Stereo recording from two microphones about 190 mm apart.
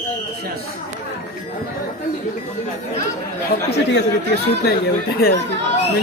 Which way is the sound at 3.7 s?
65° left (ahead or behind).